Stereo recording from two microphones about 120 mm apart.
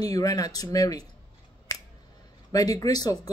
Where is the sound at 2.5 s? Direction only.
30° left (ahead or behind).